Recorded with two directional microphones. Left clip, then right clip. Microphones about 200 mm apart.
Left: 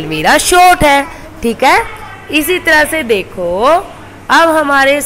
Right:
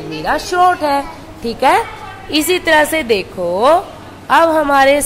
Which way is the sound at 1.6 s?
5° left (ahead or behind).